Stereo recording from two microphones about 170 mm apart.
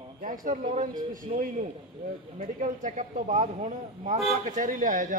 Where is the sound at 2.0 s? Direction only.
50° right (ahead or behind).